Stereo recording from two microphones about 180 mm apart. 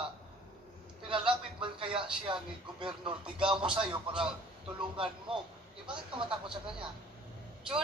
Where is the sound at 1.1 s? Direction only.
30° right (ahead or behind).